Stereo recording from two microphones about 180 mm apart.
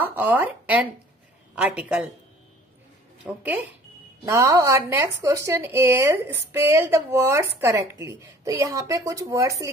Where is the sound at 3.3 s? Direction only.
10° right (ahead or behind).